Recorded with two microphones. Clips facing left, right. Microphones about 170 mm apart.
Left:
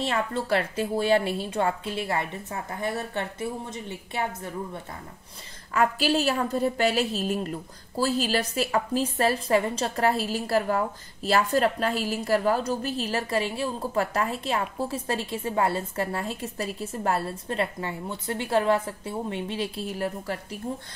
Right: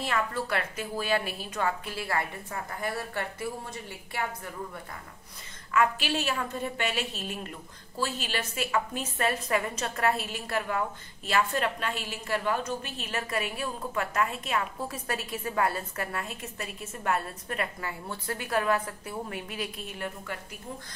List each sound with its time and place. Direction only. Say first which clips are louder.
0.0 s a woman's voice: left 3 dB; 25° left (ahead or behind)
5.7 s a woman's voice: left 3 dB; 35° left (ahead or behind)